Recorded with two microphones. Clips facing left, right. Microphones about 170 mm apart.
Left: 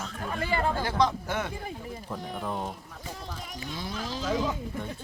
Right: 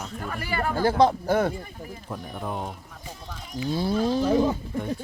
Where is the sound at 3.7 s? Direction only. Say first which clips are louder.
Right 12 dB; 35° right (ahead or behind).